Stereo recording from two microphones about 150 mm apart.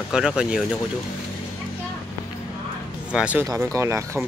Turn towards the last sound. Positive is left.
turn(degrees=-20)  # may be behind; listen again after turning